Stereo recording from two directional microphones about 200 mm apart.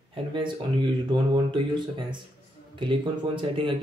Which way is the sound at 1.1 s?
25° right (ahead or behind).